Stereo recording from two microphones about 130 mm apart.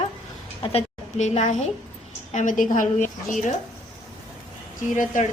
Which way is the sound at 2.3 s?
75° left (ahead or behind).